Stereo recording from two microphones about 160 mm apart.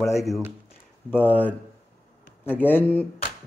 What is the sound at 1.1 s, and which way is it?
A man's voice, 10° left (ahead or behind).